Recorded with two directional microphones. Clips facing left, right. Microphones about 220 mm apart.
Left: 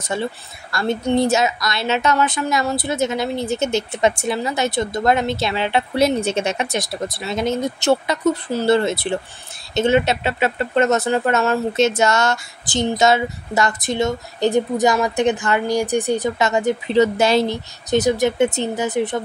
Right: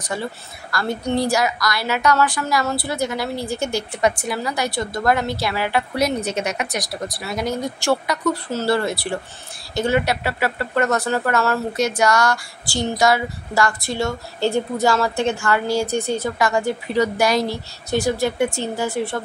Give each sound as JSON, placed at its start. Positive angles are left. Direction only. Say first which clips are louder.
{"t": 0.0, "sound": "speech", "louder": "left 3 dB", "side_deg": 25}